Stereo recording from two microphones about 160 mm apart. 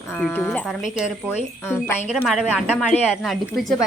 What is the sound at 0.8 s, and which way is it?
Speech, 5° right (ahead or behind).